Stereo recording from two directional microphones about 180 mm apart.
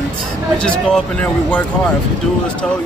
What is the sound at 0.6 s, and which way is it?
Speech, 5° left (ahead or behind).